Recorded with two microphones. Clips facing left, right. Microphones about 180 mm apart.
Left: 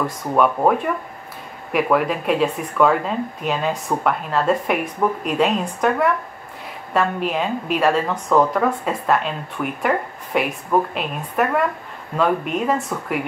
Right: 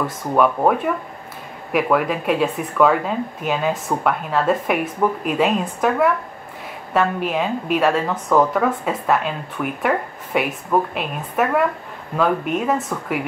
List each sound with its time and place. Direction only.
0.0 s a woman's voice: centre (ahead or behind)